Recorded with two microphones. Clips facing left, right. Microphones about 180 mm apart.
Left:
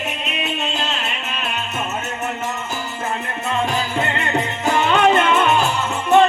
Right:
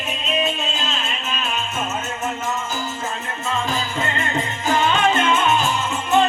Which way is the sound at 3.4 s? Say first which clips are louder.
Left 2 dB; 65° left (ahead or behind).